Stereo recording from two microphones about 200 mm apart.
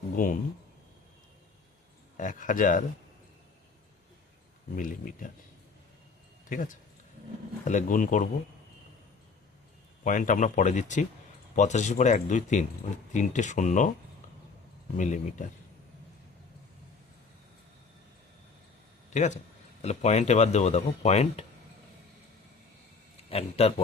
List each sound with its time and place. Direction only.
0.2 s speech: 45° left (ahead or behind)
2.1 s speech: 40° left (ahead or behind)
4.8 s speech: 40° left (ahead or behind)
6.5 s speech: 40° left (ahead or behind)
10.0 s speech: 40° left (ahead or behind)
14.9 s speech: 40° left (ahead or behind)
19.1 s speech: 35° left (ahead or behind)
23.3 s speech: 30° left (ahead or behind)